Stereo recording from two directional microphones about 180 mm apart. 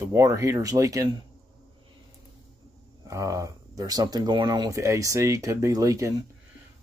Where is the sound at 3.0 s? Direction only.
20° right (ahead or behind).